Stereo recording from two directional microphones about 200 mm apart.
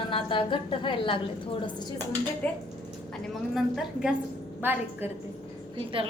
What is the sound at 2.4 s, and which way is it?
A woman's voice, 5° left (ahead or behind).